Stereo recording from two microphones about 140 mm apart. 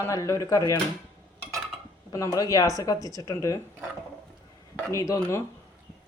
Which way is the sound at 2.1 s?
25° left (ahead or behind).